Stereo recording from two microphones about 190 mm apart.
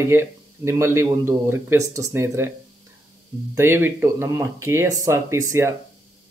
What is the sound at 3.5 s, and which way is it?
A man's voice, 10° right (ahead or behind).